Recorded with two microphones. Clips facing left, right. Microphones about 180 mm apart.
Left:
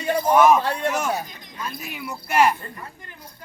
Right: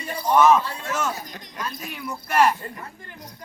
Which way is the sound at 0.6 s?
70° left (ahead or behind).